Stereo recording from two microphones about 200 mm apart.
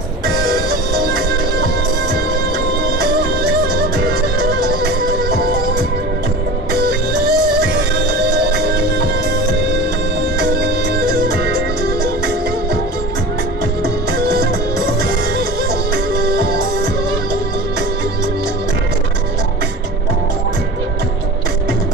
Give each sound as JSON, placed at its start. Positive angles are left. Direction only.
{"t": 3.6, "sound": "music", "side_deg": -50}
{"t": 6.7, "sound": "music", "side_deg": -50}
{"t": 10.4, "sound": "music", "side_deg": -55}
{"t": 14.1, "sound": "music", "side_deg": -50}